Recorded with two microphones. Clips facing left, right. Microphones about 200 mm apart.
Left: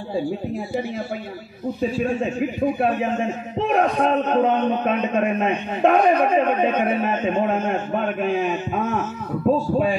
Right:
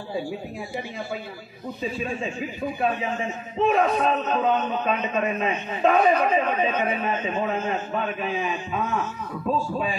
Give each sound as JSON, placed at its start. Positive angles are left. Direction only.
{"t": 1.8, "sound": "a man's voice", "side_deg": 65}